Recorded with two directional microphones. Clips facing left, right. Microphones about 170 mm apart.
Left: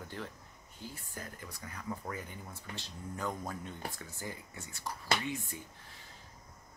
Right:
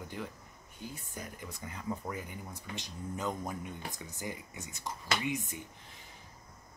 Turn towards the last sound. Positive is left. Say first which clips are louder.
# right 2 dB
turn(degrees=-20)  # may be behind; listen again after turning